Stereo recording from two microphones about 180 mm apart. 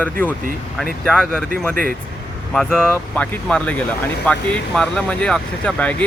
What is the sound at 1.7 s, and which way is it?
Speech, 50° right (ahead or behind).